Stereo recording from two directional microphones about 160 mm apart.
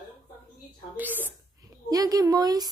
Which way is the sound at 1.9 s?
25° right (ahead or behind).